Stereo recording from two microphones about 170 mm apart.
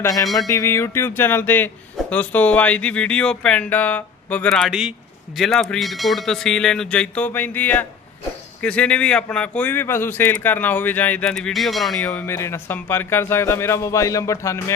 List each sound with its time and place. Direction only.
0.0 s speech: 20° left (ahead or behind); by 12.0 s centre (ahead or behind)
12.0 s speech: 15° left (ahead or behind)